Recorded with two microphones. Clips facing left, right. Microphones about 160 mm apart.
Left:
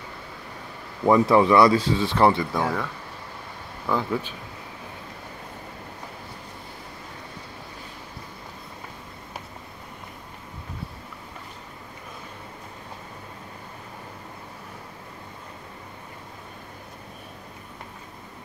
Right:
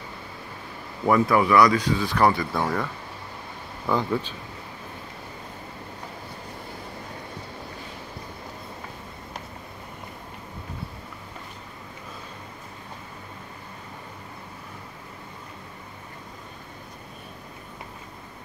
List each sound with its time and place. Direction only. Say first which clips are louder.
1.0 s speech: left 3 dB; 25° left (ahead or behind)
2.5 s speech: even; centre (ahead or behind)